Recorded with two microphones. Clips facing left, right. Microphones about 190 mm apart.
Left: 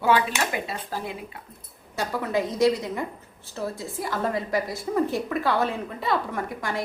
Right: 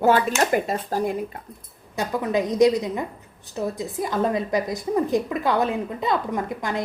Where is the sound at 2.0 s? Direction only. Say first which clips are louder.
Right 3 dB; 15° right (ahead or behind).